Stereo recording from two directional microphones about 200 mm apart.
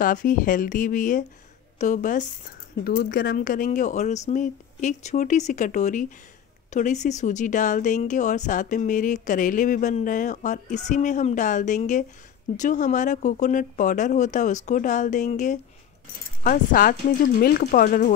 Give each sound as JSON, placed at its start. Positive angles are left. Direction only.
{"t": 0.0, "sound": "speech", "side_deg": 40}